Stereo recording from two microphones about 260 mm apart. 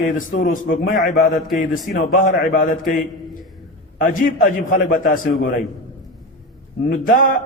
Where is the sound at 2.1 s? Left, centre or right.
Left.